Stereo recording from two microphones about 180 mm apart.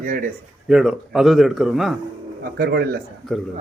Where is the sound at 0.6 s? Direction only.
Centre (ahead or behind).